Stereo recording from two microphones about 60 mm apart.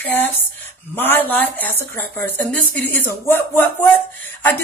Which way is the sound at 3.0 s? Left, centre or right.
Left.